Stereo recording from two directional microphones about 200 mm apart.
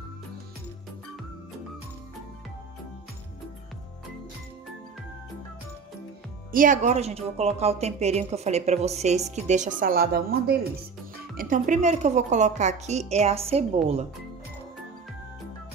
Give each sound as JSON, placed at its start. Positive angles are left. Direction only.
{"t": 6.5, "sound": "a woman's voice", "side_deg": -40}